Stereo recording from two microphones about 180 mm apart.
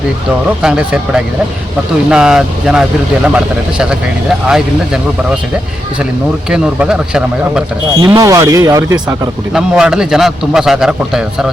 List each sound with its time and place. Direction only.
0.6 s a man's voice: 5° right (ahead or behind)
6.5 s a man's voice: 5° right (ahead or behind)
8.0 s speech: 20° right (ahead or behind)
9.6 s a man's voice: 5° right (ahead or behind)